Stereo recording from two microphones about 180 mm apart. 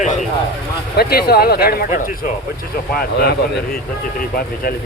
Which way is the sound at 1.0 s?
60° left (ahead or behind).